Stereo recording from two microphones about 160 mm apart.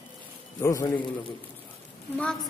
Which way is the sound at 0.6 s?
20° left (ahead or behind).